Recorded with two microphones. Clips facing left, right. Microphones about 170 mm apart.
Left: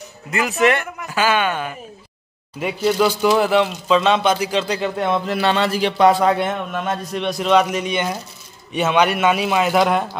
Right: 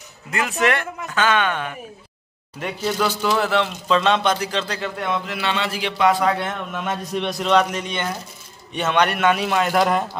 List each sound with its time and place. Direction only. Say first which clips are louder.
0.3 s a man's voice: left 4 dB; centre (ahead or behind); by 5.0 s 15° left (ahead or behind)
5.0 s a man's voice: left 6 dB; 35° left (ahead or behind)
6.7 s a man's voice: left 2 dB; centre (ahead or behind)